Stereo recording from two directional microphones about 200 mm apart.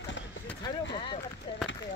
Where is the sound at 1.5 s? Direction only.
25° left (ahead or behind).